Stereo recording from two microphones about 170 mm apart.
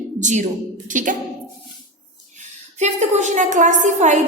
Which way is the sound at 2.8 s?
40° right (ahead or behind).